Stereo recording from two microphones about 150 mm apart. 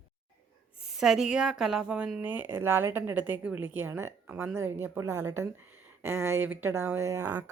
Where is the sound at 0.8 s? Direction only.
5° right (ahead or behind).